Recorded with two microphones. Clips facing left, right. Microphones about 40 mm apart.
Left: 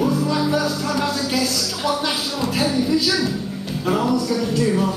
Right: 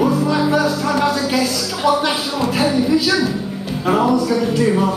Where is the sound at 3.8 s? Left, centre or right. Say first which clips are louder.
Right 4 dB; centre.